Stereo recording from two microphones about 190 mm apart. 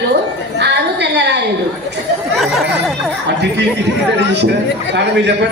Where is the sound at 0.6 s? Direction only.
65° right (ahead or behind).